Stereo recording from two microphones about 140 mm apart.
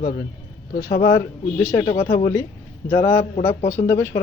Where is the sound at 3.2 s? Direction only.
55° left (ahead or behind).